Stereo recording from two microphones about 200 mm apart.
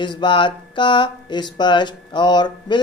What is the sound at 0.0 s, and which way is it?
Speech, 25° left (ahead or behind).